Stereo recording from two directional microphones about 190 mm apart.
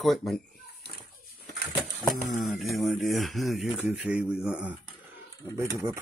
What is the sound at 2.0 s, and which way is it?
Speech, centre (ahead or behind).